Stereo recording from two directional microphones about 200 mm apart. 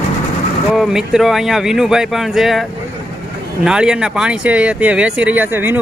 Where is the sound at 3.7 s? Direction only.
5° right (ahead or behind).